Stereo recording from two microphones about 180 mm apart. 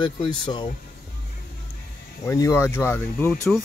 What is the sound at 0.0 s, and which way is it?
Speech, 25° left (ahead or behind).